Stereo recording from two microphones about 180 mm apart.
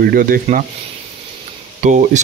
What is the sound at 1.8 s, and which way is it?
Speech, 40° right (ahead or behind).